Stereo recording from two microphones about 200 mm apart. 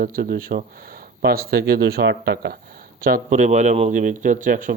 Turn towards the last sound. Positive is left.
turn(degrees=-40)  # may be behind; listen again after turning